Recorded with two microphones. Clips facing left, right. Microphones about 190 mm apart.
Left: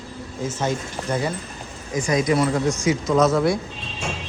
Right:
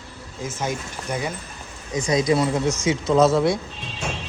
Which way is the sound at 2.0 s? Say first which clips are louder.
Even; 25° right (ahead or behind).